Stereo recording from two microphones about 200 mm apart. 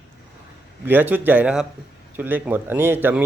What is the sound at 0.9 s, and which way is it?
A man's voice, 10° right (ahead or behind).